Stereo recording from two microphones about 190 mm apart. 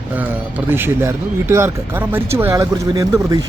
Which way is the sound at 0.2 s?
10° right (ahead or behind).